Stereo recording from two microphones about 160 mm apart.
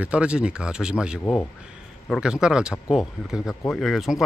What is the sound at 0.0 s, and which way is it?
Speech, 5° right (ahead or behind).